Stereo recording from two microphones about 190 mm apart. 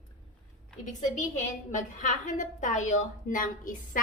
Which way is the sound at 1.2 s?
40° left (ahead or behind).